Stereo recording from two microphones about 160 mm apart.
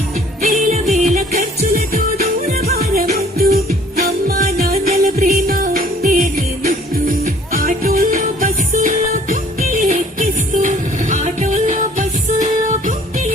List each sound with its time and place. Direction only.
0.4 s music: 45° right (ahead or behind); by 4.4 s 70° right (ahead or behind)
4.7 s music: 40° right (ahead or behind)
5.3 s music: 60° right (ahead or behind)